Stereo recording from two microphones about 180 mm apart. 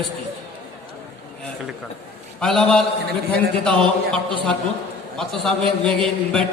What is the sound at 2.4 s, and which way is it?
A man's voice, 5° left (ahead or behind).